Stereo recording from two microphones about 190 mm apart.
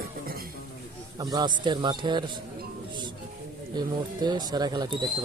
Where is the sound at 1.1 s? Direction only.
20° right (ahead or behind).